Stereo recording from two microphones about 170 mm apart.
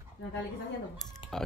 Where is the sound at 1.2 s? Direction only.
30° left (ahead or behind).